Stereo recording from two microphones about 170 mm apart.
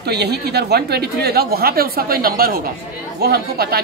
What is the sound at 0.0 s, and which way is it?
A woman's voice, 75° right (ahead or behind).